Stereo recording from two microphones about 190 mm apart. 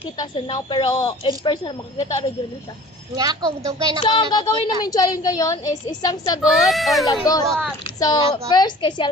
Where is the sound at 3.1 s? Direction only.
20° right (ahead or behind).